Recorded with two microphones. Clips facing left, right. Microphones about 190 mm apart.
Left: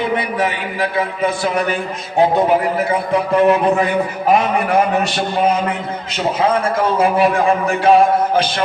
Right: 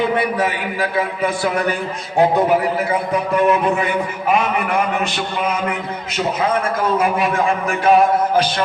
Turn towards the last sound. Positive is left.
turn(degrees=30)  # may be behind; listen again after turning